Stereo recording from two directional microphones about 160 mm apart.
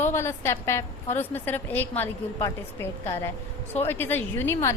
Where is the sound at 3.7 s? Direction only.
15° left (ahead or behind).